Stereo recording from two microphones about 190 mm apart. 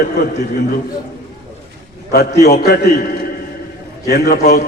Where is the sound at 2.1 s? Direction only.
55° left (ahead or behind).